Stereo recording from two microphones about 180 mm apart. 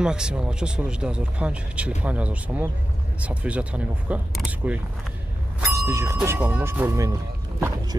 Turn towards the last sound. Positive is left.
turn(degrees=-20)  # may be behind; listen again after turning